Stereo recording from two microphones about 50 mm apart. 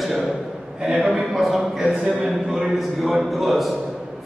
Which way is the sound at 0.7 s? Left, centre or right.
Centre.